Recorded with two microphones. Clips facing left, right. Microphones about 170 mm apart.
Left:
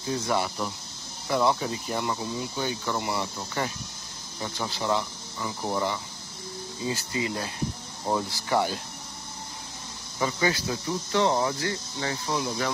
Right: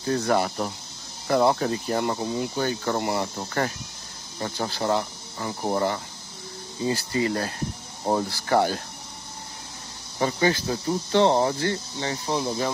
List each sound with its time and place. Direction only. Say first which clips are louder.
0.1 s speech: right 4 dB; 55° right (ahead or behind)
7.0 s speech: right 5 dB; 45° right (ahead or behind)
8.0 s speech: right 3 dB; 35° right (ahead or behind)
8.3 s speech: right 4 dB; 45° right (ahead or behind)
10.1 s speech: right 4 dB; 35° right (ahead or behind)
12.0 s speech: right 1 dB; 30° right (ahead or behind)